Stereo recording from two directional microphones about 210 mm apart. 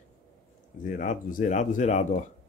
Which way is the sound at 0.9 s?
40° left (ahead or behind).